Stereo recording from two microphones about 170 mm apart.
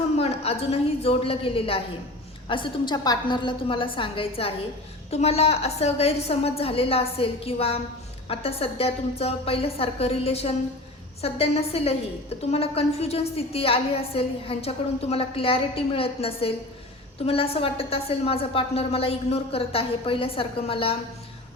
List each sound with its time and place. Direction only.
0.2 s a woman's voice: 35° left (ahead or behind)